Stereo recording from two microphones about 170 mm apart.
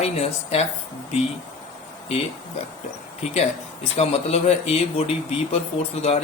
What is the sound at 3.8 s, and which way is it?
Speech, 35° left (ahead or behind).